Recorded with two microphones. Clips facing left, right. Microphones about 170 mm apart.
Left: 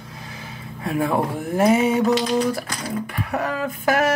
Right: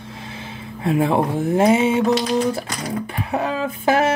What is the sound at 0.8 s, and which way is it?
Speech, 25° right (ahead or behind).